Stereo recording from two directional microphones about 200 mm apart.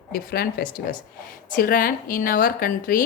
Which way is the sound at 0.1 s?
50° left (ahead or behind).